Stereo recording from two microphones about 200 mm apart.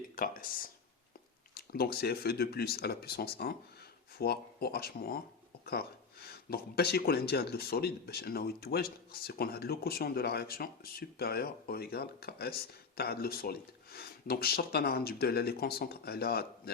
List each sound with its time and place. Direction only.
0.2 s speech: 45° left (ahead or behind)